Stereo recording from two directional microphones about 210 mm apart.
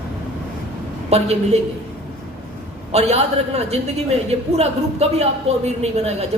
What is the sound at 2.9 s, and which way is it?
A man's voice, 30° right (ahead or behind).